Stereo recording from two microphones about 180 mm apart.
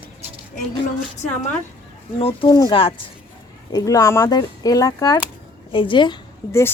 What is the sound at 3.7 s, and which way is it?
A woman's voice, 20° left (ahead or behind).